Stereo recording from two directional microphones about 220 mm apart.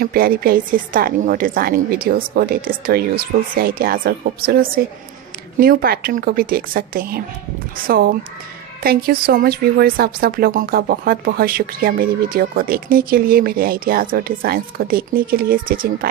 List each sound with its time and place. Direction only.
0.0 s a woman's voice: 40° right (ahead or behind)